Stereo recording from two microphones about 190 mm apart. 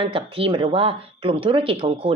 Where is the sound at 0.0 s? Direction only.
30° right (ahead or behind).